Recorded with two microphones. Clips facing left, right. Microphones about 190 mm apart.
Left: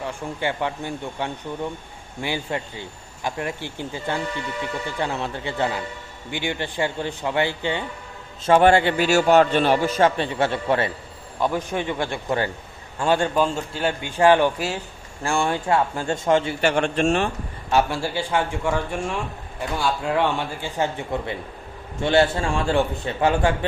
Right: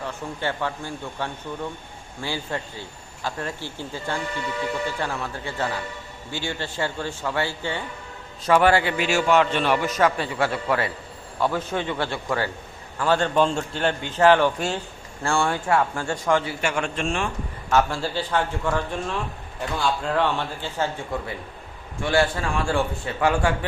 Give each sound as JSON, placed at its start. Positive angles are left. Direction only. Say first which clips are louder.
{"t": 0.0, "sound": "a man's voice", "louder": "left 2 dB", "side_deg": 15}
{"t": 13.3, "sound": "a man's voice", "louder": "right 1 dB", "side_deg": 5}
{"t": 17.7, "sound": "a man's voice", "louder": "left 1 dB", "side_deg": 15}